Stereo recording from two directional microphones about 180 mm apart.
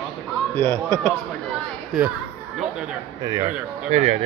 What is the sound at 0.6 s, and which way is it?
Speech, 15° left (ahead or behind).